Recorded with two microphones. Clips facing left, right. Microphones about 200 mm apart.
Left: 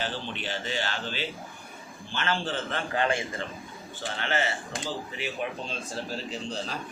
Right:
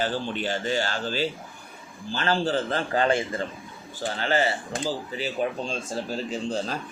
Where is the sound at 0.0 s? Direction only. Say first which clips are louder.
Right 6 dB; 45° right (ahead or behind).